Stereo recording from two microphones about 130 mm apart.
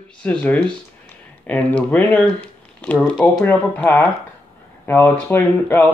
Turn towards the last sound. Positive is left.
turn(degrees=15)  # may be behind; listen again after turning